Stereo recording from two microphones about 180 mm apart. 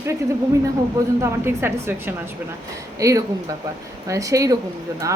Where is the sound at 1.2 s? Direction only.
10° right (ahead or behind).